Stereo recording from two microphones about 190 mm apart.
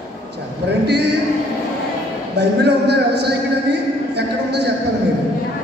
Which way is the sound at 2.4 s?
60° right (ahead or behind).